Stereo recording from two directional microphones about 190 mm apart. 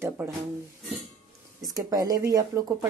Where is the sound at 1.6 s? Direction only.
20° right (ahead or behind).